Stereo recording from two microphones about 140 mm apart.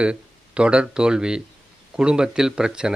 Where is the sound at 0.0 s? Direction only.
5° right (ahead or behind).